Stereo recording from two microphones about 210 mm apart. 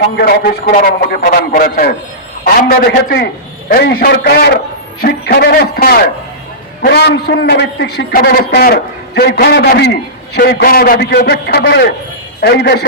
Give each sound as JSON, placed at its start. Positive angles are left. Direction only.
{"t": 0.2, "sound": "a man's voice", "side_deg": 45}